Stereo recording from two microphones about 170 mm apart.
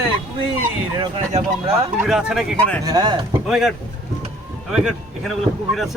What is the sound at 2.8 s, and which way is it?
Speech, 25° right (ahead or behind).